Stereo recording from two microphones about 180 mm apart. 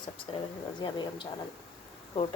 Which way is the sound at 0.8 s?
25° left (ahead or behind).